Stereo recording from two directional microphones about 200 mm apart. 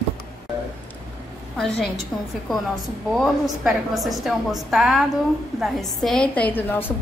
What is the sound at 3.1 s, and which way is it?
A woman's voice, centre (ahead or behind).